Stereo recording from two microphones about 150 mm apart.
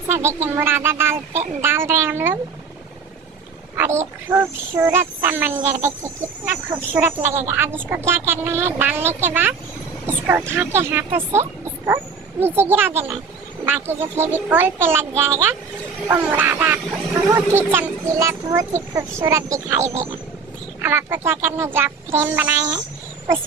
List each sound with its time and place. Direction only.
0.4 s a woman's voice: 15° right (ahead or behind)
3.7 s a woman's voice: 15° right (ahead or behind)
10.0 s vehicle: 15° right (ahead or behind)
10.5 s a woman's voice: 15° right (ahead or behind)